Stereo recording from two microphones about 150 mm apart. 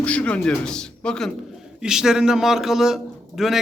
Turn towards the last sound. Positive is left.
turn(degrees=0)  # may be behind; listen again after turning